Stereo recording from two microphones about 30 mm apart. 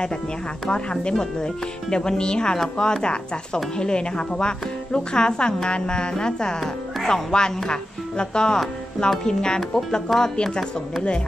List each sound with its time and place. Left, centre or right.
0.7 s a woman's voice: left
1.4 s speech: left
10.1 s speech: centre
10.4 s a woman's voice: left